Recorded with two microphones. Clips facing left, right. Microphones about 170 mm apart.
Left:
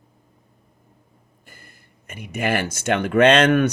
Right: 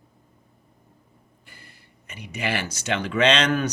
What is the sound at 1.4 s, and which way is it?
Speech, 45° left (ahead or behind).